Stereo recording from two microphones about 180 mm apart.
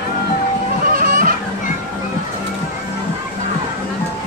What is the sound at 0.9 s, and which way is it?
Children playing, 55° right (ahead or behind).